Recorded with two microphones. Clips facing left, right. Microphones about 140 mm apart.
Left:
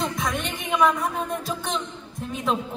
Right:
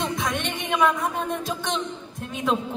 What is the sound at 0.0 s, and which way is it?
Music, centre (ahead or behind).